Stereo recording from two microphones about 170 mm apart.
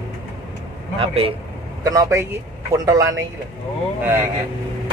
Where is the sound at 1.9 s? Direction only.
20° right (ahead or behind).